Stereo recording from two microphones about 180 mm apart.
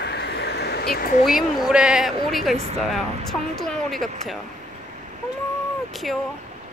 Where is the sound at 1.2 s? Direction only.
Centre (ahead or behind).